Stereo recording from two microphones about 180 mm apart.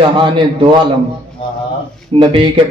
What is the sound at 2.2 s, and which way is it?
Speech, 30° right (ahead or behind).